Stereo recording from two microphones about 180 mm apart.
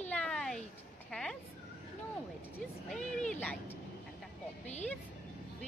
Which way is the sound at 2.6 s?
5° left (ahead or behind).